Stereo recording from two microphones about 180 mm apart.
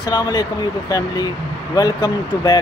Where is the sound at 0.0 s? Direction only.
20° left (ahead or behind).